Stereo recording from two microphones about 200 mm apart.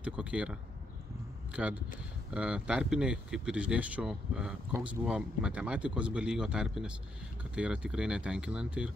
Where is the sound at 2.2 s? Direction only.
5° right (ahead or behind).